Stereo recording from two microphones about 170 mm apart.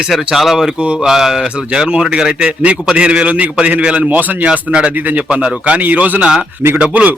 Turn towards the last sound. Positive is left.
turn(degrees=-10)  # may be behind; listen again after turning